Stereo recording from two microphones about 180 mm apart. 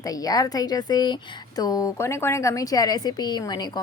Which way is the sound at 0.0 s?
20° left (ahead or behind).